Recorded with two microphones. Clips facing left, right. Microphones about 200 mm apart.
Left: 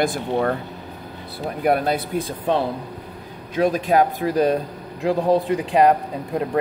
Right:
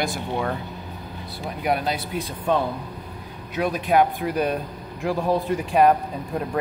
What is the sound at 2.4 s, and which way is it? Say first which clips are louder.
Speech: even; 30° left (ahead or behind).